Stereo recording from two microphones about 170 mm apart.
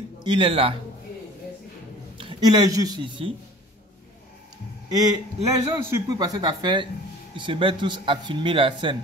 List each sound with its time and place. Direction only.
0.2 s speech: 30° right (ahead or behind)
2.1 s speech: 25° right (ahead or behind)
4.9 s speech: 25° right (ahead or behind)